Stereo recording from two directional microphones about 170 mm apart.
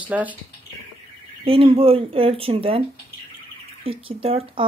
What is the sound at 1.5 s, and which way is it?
Speech, 35° right (ahead or behind).